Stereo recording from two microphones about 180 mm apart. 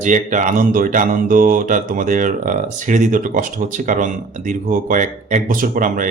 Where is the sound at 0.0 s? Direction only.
45° right (ahead or behind).